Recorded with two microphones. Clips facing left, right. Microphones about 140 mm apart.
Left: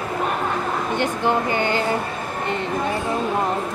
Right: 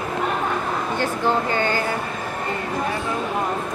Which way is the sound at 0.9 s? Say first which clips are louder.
Left 1 dB; 20° left (ahead or behind).